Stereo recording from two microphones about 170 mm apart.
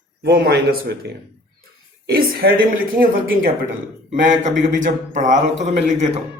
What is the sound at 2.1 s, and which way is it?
Speech, 60° right (ahead or behind).